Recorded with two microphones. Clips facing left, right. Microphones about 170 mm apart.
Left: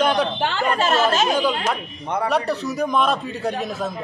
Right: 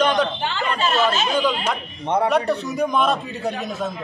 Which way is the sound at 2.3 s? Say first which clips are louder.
Right 1 dB; centre (ahead or behind).